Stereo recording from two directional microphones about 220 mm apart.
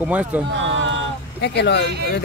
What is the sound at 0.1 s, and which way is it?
Speech, 5° right (ahead or behind).